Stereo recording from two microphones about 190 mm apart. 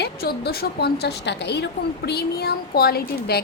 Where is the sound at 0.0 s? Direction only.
55° left (ahead or behind).